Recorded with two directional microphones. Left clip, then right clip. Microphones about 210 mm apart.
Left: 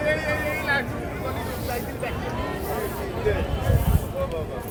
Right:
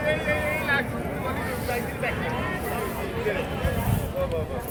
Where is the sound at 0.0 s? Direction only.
55° left (ahead or behind).